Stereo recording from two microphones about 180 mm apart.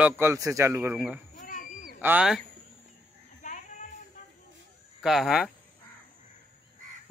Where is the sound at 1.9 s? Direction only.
5° right (ahead or behind).